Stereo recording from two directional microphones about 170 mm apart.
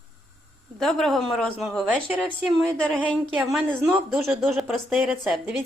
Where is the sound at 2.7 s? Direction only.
5° left (ahead or behind).